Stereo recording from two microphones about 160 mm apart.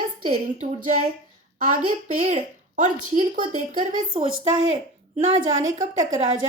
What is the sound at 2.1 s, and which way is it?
A woman's voice, 45° right (ahead or behind).